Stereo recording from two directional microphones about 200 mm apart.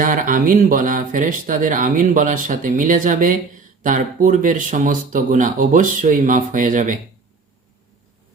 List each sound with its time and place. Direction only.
0.0 s speech: 40° right (ahead or behind)